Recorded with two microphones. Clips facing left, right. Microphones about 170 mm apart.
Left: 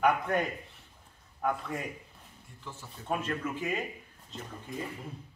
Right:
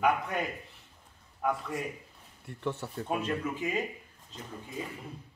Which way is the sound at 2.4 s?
70° right (ahead or behind).